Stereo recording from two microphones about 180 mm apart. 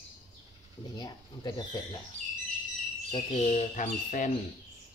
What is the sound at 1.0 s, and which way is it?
Speech, 20° left (ahead or behind).